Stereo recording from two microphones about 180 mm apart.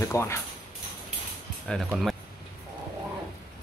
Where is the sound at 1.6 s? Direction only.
Centre (ahead or behind).